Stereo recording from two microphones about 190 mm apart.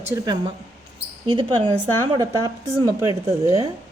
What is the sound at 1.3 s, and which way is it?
A woman's voice, 25° right (ahead or behind).